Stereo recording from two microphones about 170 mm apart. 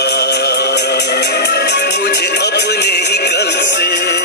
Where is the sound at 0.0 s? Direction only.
80° left.